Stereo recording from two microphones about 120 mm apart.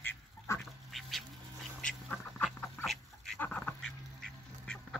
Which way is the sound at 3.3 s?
15° left (ahead or behind).